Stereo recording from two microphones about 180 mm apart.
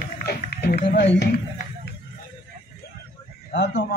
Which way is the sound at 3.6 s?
70° left (ahead or behind).